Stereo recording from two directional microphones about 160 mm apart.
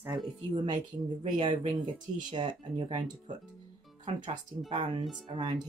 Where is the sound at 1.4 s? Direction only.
30° right (ahead or behind).